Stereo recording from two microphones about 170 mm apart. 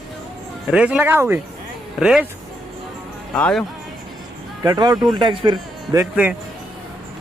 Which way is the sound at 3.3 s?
5° left (ahead or behind).